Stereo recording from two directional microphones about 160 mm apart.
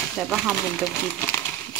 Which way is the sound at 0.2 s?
5° left (ahead or behind).